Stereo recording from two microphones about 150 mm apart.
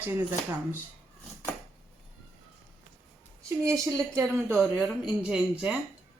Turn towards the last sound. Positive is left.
turn(degrees=-5)  # may be behind; listen again after turning